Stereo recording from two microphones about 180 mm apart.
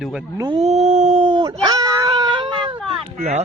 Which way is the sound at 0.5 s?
35° right (ahead or behind).